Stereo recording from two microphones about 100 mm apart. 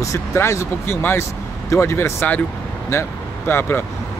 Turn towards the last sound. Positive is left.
turn(degrees=20)  # may be behind; listen again after turning